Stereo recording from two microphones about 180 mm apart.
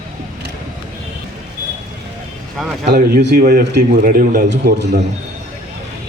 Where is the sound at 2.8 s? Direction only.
60° right (ahead or behind).